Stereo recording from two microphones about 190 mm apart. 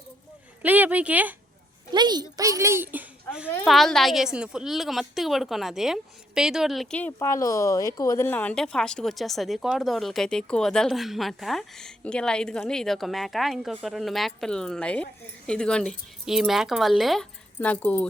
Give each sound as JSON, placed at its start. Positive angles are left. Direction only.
{"t": 0.6, "sound": "speech", "side_deg": -10}
{"t": 1.9, "sound": "speech", "side_deg": -20}
{"t": 7.2, "sound": "speech", "side_deg": 15}